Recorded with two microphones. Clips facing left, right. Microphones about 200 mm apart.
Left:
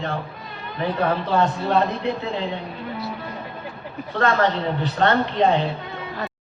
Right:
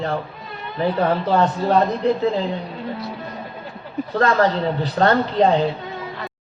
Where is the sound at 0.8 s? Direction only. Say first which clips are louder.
Right 3 dB; 35° right (ahead or behind).